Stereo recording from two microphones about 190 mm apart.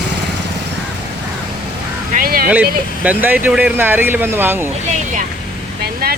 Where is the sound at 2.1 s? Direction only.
50° right (ahead or behind).